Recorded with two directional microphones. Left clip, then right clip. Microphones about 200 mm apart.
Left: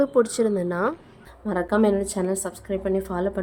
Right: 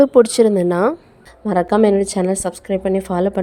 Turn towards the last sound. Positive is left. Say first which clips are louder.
# right 7 dB
turn(degrees=-35)  # may be behind; listen again after turning